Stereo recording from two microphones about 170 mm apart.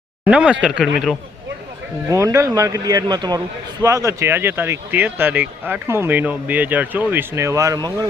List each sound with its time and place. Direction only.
0.3 s a man's voice: 5° right (ahead or behind)
2.0 s a man's voice: 20° right (ahead or behind)